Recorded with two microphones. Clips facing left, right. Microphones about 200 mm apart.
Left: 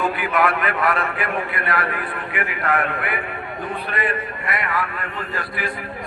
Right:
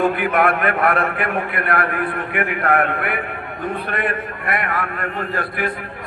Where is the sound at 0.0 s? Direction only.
55° right (ahead or behind).